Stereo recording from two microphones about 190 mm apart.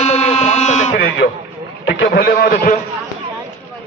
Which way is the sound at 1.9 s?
55° left (ahead or behind).